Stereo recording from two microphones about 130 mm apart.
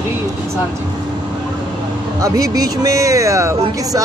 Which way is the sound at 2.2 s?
30° right (ahead or behind).